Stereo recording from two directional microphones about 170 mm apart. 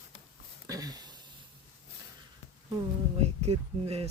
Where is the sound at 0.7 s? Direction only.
20° right (ahead or behind).